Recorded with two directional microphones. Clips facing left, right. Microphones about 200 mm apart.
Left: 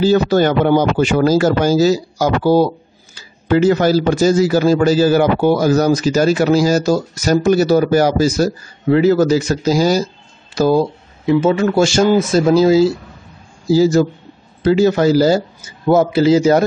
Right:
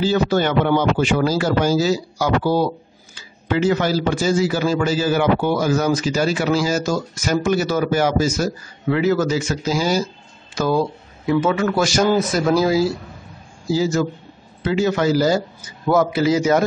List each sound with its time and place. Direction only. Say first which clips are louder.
0.0 s a man's voice: left 5 dB; 40° left (ahead or behind)
11.2 s a man's voice: left 5 dB; 25° left (ahead or behind)
13.7 s a man's voice: left 7 dB; 35° left (ahead or behind)